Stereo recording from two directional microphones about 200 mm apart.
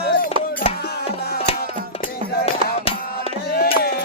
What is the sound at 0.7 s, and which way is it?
Music, 30° left (ahead or behind).